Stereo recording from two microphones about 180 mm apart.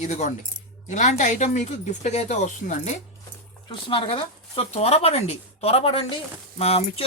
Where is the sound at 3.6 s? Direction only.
30° left (ahead or behind).